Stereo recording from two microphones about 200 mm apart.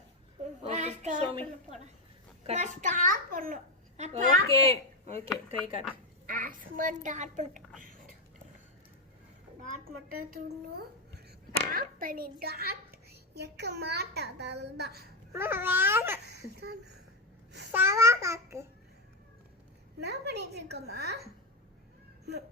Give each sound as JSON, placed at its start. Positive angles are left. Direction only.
{"t": 0.6, "sound": "a sound", "side_deg": -35}
{"t": 2.5, "sound": "a child's voice", "side_deg": -35}
{"t": 6.2, "sound": "a child's voice", "side_deg": -45}
{"t": 10.1, "sound": "a child's voice", "side_deg": -45}
{"t": 15.3, "sound": "babbling", "side_deg": -10}
{"t": 16.2, "sound": "a woman's voice", "side_deg": -55}
{"t": 17.7, "sound": "a child's voice", "side_deg": -10}
{"t": 20.0, "sound": "a woman's voice", "side_deg": -55}